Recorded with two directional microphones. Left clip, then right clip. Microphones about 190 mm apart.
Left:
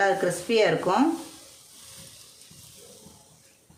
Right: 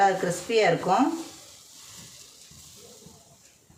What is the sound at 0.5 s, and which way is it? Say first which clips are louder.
Speech: right 1 dB; 25° left (ahead or behind).